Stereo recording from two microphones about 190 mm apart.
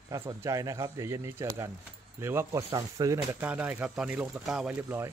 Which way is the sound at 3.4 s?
10° right (ahead or behind).